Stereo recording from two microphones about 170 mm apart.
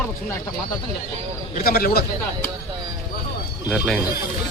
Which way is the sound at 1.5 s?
60° left (ahead or behind).